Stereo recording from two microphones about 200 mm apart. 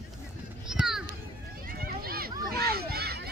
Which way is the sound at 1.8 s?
50° right (ahead or behind).